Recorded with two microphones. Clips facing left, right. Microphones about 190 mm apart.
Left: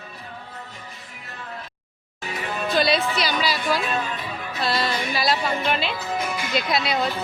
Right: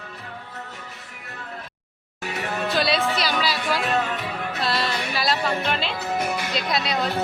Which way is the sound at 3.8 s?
70° right (ahead or behind).